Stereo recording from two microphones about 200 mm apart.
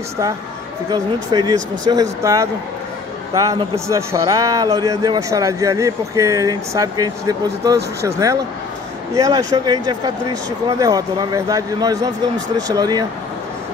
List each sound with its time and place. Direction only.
0.9 s a man's voice: 20° right (ahead or behind)